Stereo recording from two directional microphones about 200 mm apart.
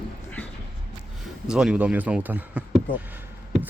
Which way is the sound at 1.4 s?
5° right (ahead or behind).